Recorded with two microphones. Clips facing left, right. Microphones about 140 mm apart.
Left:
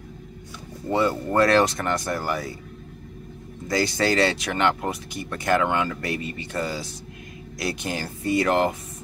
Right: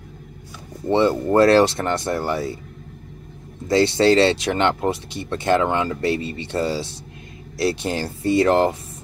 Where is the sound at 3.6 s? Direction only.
25° right (ahead or behind).